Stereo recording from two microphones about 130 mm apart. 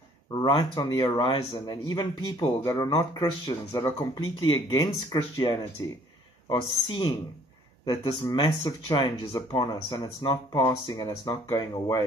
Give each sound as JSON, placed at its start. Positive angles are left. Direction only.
{"t": 0.4, "sound": "speech", "side_deg": 35}